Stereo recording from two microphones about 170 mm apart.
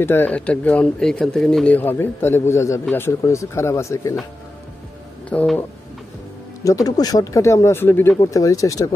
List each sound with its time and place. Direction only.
0.0 s speech: 10° left (ahead or behind)
5.3 s speech: 10° left (ahead or behind)
6.6 s speech: 20° left (ahead or behind)